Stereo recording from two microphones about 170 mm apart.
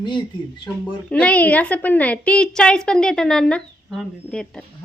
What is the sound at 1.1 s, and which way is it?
A woman's voice, 5° left (ahead or behind).